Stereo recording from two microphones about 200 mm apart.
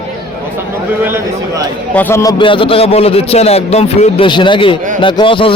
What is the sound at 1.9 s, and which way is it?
A man's voice, 10° left (ahead or behind).